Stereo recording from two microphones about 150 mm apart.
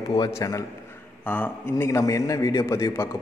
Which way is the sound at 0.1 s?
25° left (ahead or behind).